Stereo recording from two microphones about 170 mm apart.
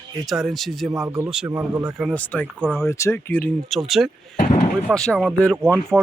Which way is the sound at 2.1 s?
10° left (ahead or behind).